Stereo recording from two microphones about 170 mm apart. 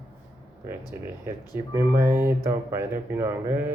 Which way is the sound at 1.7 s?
15° right (ahead or behind).